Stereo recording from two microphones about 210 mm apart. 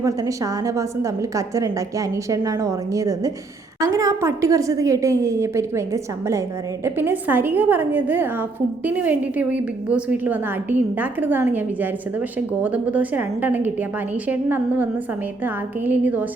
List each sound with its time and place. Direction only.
0.0 s a woman's voice: 15° right (ahead or behind)